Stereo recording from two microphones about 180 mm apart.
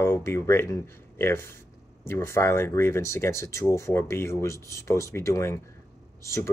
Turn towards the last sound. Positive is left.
turn(degrees=15)  # may be behind; listen again after turning